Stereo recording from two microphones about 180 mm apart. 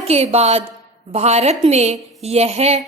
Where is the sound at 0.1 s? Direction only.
35° right (ahead or behind).